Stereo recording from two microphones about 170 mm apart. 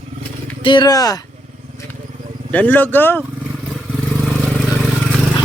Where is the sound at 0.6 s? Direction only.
25° left (ahead or behind).